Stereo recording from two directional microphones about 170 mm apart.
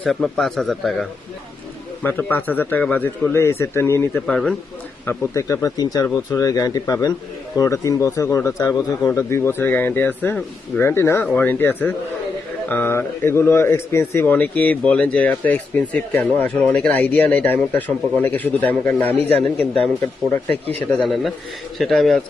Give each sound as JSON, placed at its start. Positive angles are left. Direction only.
{"t": 0.0, "sound": "a man's voice", "side_deg": 0}
{"t": 2.0, "sound": "a man's voice", "side_deg": 10}
{"t": 4.3, "sound": "a man's voice", "side_deg": 5}
{"t": 5.0, "sound": "a man's voice", "side_deg": 15}
{"t": 21.0, "sound": "a man's voice", "side_deg": 0}